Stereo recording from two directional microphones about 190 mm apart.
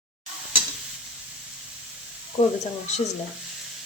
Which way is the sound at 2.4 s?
35° left (ahead or behind).